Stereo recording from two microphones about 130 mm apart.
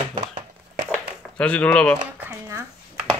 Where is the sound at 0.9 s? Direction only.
10° left (ahead or behind).